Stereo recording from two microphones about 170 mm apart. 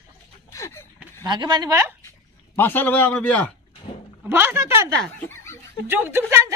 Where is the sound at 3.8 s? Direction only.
35° left (ahead or behind).